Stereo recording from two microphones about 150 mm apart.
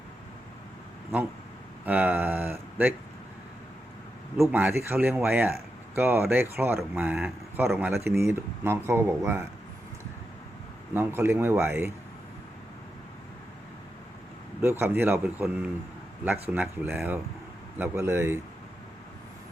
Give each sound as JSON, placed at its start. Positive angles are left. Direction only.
{"t": 1.8, "sound": "speech", "side_deg": -10}
{"t": 4.4, "sound": "speech", "side_deg": -15}
{"t": 10.9, "sound": "speech", "side_deg": -15}
{"t": 14.6, "sound": "speech", "side_deg": -15}